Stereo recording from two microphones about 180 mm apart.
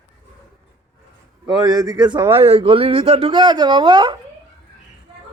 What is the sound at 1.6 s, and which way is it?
Speech, 20° right (ahead or behind).